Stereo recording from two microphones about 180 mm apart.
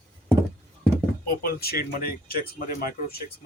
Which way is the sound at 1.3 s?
55° left (ahead or behind).